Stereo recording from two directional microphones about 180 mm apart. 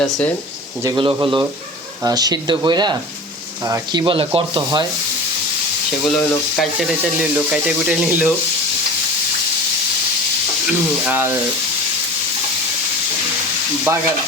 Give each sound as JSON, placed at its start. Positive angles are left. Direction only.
{"t": 0.0, "sound": "speech", "side_deg": 0}
{"t": 0.8, "sound": "speech", "side_deg": -20}
{"t": 6.6, "sound": "speech", "side_deg": -5}
{"t": 10.7, "sound": "speech", "side_deg": -5}
{"t": 13.9, "sound": "speech", "side_deg": -15}